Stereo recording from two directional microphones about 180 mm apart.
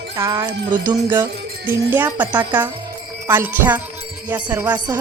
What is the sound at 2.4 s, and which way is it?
Speech, 25° right (ahead or behind).